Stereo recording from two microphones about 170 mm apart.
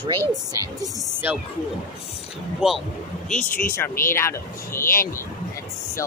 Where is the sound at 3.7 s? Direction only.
15° left (ahead or behind).